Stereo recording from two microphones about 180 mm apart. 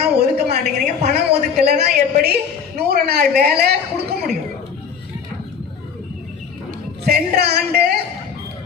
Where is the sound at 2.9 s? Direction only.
60° right (ahead or behind).